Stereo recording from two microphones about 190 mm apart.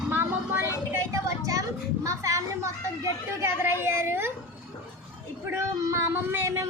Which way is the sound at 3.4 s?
15° right (ahead or behind).